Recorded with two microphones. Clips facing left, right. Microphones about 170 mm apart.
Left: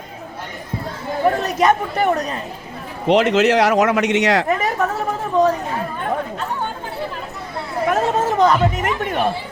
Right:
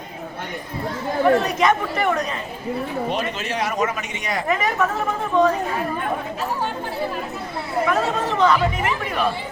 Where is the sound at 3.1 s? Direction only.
85° left.